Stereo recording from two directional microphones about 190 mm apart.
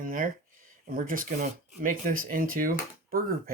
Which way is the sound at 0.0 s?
45° right (ahead or behind).